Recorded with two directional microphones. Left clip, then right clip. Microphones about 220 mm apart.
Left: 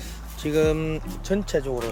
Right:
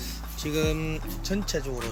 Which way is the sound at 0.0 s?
15° left (ahead or behind).